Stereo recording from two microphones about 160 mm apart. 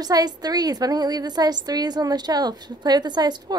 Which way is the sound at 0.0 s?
25° right (ahead or behind).